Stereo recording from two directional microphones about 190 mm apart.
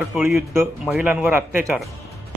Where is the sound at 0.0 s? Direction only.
5° right (ahead or behind).